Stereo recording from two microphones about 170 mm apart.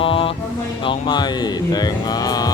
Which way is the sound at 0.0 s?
30° left (ahead or behind).